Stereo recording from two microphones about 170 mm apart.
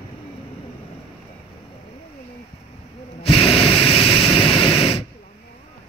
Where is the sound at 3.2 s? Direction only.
30° left (ahead or behind).